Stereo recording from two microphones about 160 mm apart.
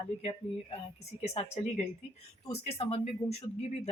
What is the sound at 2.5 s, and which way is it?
Speech, 40° left (ahead or behind).